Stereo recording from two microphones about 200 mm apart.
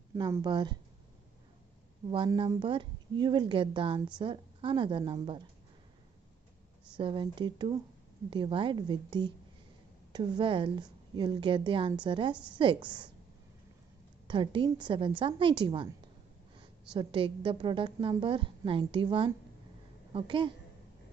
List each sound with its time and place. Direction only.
0.1 s a woman's voice: 20° right (ahead or behind)
2.0 s a woman's voice: 25° right (ahead or behind)
7.0 s a woman's voice: 25° right (ahead or behind)
14.2 s a woman's voice: 25° right (ahead or behind)
16.9 s a woman's voice: 25° right (ahead or behind)